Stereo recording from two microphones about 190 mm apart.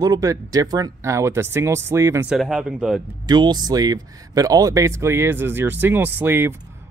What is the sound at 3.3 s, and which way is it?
Speech, 20° right (ahead or behind).